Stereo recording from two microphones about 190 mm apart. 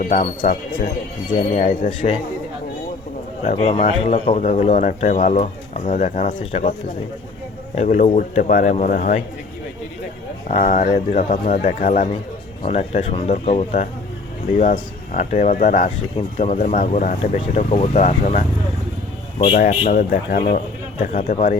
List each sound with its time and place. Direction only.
0.0 s speech: 45° left (ahead or behind)
1.5 s speech: 45° left (ahead or behind)
3.4 s speech: 35° left (ahead or behind)
7.8 s speech: 35° left (ahead or behind)
10.5 s speech: 40° left (ahead or behind)
12.6 s speech: 35° left (ahead or behind)
19.5 s speech: 50° left (ahead or behind)